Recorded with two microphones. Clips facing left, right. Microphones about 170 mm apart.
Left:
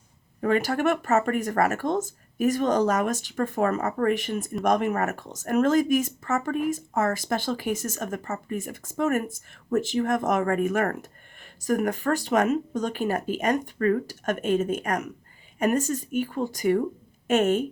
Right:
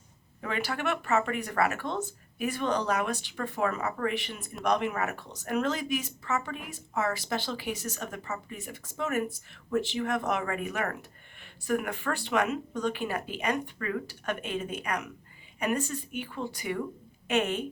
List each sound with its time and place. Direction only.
0.4 s speech: 45° left (ahead or behind)